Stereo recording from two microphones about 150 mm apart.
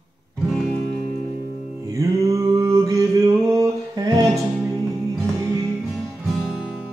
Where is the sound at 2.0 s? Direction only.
20° right (ahead or behind).